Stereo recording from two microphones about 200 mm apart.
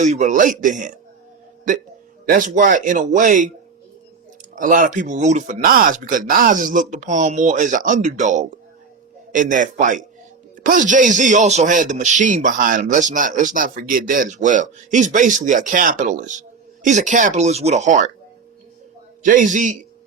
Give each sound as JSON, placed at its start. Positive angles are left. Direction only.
{"t": 0.0, "sound": "speech", "side_deg": -40}
{"t": 2.2, "sound": "speech", "side_deg": -45}
{"t": 4.5, "sound": "speech", "side_deg": -40}
{"t": 19.2, "sound": "speech", "side_deg": -40}